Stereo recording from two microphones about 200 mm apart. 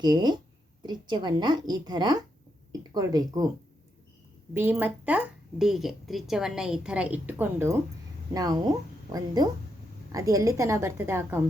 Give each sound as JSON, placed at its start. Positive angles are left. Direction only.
{"t": 0.0, "sound": "a woman's voice", "side_deg": -20}
{"t": 4.5, "sound": "a woman's voice", "side_deg": -10}